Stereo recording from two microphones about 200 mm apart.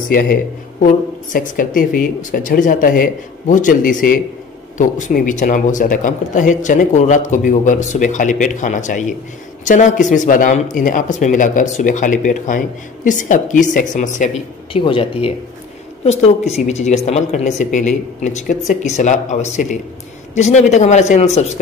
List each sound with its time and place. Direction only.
0.1 s a woman's voice: 45° left (ahead or behind)
14.7 s speech: 25° left (ahead or behind)